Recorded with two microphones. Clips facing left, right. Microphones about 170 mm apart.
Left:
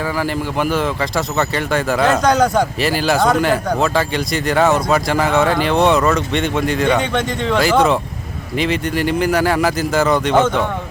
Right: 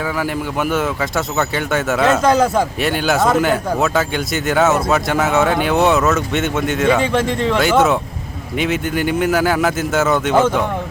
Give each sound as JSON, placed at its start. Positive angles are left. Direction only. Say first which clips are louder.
{"t": 0.2, "sound": "speech", "louder": "left 1 dB", "side_deg": 0}